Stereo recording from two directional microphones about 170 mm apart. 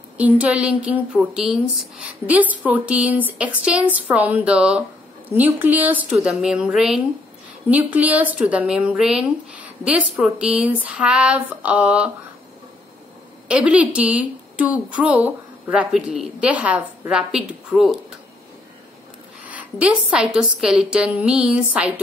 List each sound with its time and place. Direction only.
0.2 s speech: 10° right (ahead or behind)
13.5 s speech: 5° right (ahead or behind)
19.4 s a woman's voice: 10° right (ahead or behind)